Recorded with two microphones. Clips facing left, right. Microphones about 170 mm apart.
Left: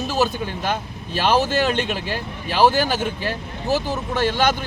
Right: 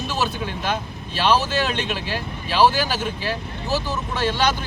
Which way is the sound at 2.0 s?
50° left (ahead or behind).